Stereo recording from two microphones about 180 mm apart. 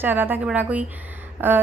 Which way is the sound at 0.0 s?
10° right (ahead or behind).